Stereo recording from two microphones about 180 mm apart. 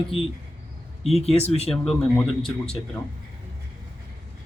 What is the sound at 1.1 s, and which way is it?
Speech, 35° left (ahead or behind).